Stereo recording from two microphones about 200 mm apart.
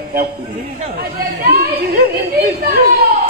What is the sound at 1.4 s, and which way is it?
A man's voice, 50° right (ahead or behind).